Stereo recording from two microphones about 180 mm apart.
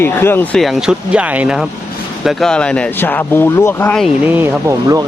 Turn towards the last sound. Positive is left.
turn(degrees=-15)  # may be behind; listen again after turning